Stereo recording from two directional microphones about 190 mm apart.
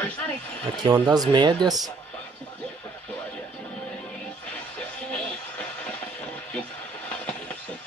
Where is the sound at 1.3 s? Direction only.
25° right (ahead or behind).